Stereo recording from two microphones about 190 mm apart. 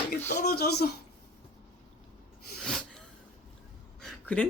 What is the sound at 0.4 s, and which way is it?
Speech, 60° left (ahead or behind).